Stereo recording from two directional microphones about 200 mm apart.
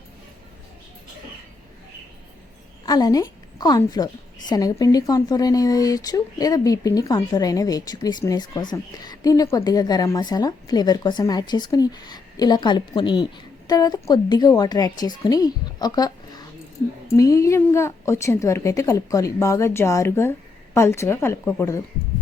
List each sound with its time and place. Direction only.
2.8 s a woman's voice: 20° left (ahead or behind)